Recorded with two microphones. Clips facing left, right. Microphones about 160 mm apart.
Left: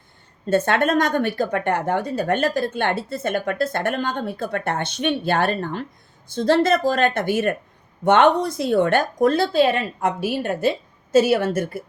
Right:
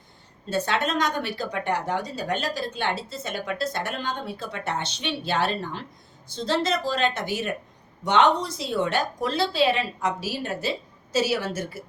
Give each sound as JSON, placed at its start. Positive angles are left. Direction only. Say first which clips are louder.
{"t": 0.5, "sound": "speech", "louder": "left 7 dB", "side_deg": 55}